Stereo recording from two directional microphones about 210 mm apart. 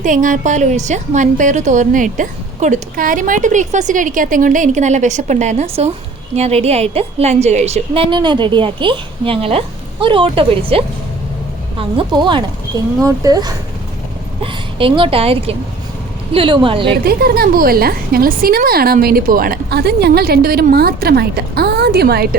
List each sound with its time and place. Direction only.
0.0 s a woman's voice: 35° right (ahead or behind)
17.0 s a woman's voice: 45° right (ahead or behind)